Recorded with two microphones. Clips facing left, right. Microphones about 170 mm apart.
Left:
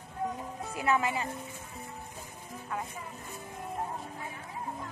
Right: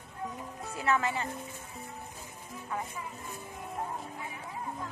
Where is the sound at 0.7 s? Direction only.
15° left (ahead or behind).